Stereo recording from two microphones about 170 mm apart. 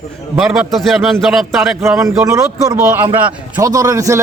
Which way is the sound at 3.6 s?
20° right (ahead or behind).